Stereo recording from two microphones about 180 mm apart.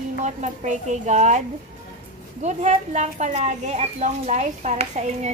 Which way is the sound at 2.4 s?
40° right (ahead or behind).